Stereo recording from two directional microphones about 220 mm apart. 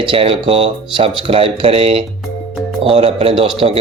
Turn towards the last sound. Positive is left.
turn(degrees=-25)  # may be behind; listen again after turning